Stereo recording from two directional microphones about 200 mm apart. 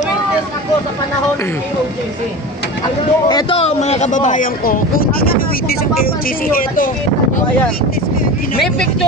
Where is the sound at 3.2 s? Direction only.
20° left (ahead or behind); by 7.4 s 45° left (ahead or behind).